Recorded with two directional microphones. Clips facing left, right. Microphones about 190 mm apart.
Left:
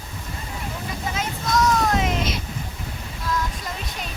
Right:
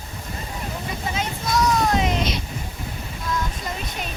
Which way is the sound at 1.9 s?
5° left (ahead or behind).